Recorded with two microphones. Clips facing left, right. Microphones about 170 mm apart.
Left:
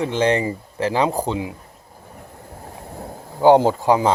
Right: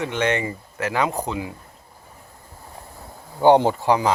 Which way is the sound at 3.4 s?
5° left (ahead or behind).